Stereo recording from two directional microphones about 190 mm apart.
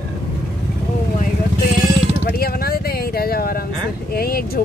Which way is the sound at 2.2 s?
50° left (ahead or behind).